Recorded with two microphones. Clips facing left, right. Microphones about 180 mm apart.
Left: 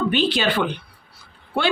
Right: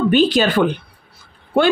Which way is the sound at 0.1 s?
45° right (ahead or behind).